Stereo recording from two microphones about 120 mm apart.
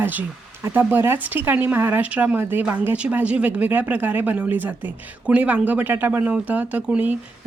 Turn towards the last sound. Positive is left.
turn(degrees=-10)  # may be behind; listen again after turning